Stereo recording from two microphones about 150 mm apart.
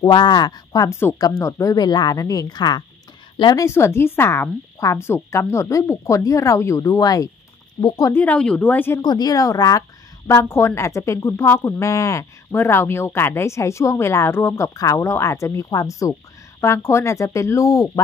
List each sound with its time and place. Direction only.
0.0 s a woman's voice: 30° left (ahead or behind)
3.6 s a woman's voice: 15° left (ahead or behind)
8.2 s speech: 10° left (ahead or behind)
9.0 s a woman's voice: 25° left (ahead or behind)